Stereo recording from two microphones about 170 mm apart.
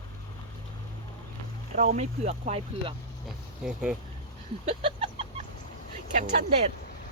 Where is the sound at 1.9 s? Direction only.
40° right (ahead or behind).